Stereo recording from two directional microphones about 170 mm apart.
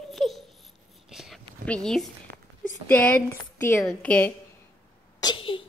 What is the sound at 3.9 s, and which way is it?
Mantra, 5° left (ahead or behind).